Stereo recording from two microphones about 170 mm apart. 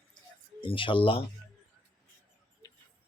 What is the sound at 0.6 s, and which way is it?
Speech, 30° left (ahead or behind).